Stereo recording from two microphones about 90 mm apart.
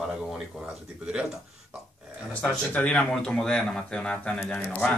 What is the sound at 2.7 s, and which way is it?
Speech, 15° left (ahead or behind).